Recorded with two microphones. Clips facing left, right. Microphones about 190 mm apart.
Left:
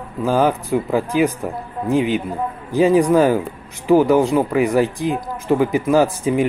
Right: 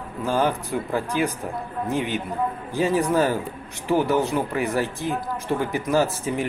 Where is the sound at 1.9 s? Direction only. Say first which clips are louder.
Left 8 dB; 15° left (ahead or behind).